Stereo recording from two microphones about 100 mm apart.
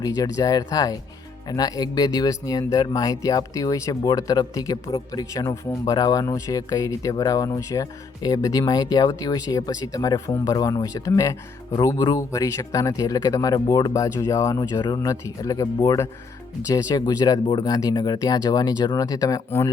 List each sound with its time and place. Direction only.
0.0 s speech: 35° left (ahead or behind)